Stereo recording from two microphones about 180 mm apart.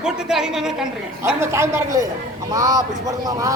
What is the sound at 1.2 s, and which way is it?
A woman's voice, 15° right (ahead or behind).